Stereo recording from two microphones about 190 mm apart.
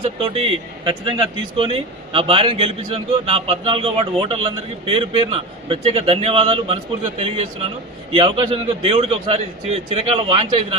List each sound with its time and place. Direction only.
0.0 s a man's voice: 30° right (ahead or behind)